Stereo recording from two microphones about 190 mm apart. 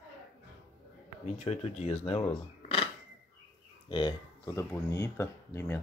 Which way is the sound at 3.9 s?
25° left (ahead or behind).